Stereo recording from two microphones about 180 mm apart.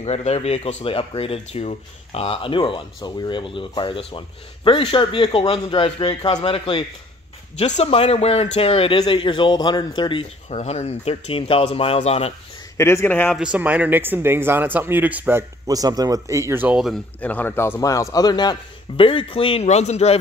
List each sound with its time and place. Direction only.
0.0 s speech: 35° left (ahead or behind)
12.7 s speech: 15° left (ahead or behind)
13.4 s speech: 5° right (ahead or behind)
17.2 s a man's voice: 10° left (ahead or behind); by 20.2 s 35° left (ahead or behind)